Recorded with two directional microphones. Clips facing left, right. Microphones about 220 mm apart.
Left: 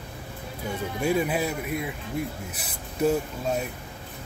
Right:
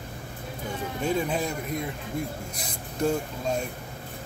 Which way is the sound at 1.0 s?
10° left (ahead or behind).